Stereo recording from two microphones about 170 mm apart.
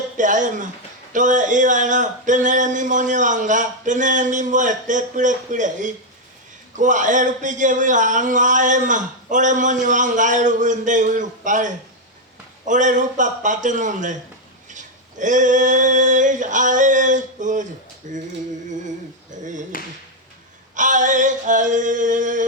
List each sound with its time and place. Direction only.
0.2 s a man's voice: 50° right (ahead or behind)
14.7 s male singing: 45° right (ahead or behind)
18.0 s a man's voice: 50° right (ahead or behind)
19.3 s clapping: 50° right (ahead or behind)
19.7 s speech: 55° left (ahead or behind)
20.7 s a man's voice: 50° right (ahead or behind)